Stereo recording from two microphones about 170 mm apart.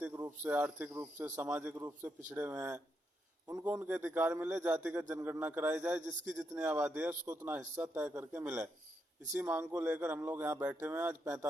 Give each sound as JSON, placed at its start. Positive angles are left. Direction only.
{"t": 0.0, "sound": "a man's voice", "side_deg": -10}
{"t": 6.1, "sound": "a man's voice", "side_deg": -20}